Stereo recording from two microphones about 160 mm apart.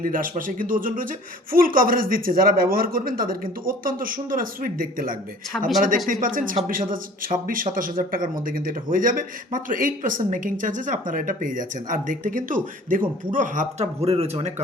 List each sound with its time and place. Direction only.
0.0 s speech: 60° right (ahead or behind)
5.5 s speech: 5° right (ahead or behind)
6.1 s speech: 55° right (ahead or behind); by 14.5 s 40° right (ahead or behind)